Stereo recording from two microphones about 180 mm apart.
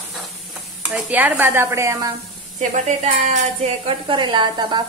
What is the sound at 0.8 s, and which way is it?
Speech, 10° right (ahead or behind).